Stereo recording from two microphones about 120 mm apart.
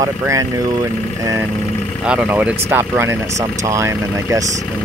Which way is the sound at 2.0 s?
10° right (ahead or behind).